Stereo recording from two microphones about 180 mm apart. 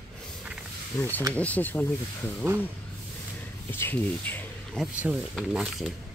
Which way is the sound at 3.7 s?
10° left (ahead or behind).